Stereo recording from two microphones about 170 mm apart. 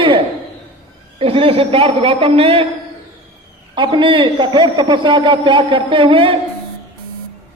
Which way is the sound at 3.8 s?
30° right (ahead or behind).